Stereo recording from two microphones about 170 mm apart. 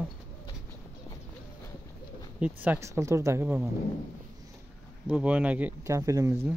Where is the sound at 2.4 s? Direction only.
10° right (ahead or behind).